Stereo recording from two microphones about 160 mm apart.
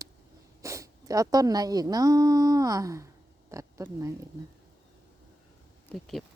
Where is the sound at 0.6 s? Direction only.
20° right (ahead or behind).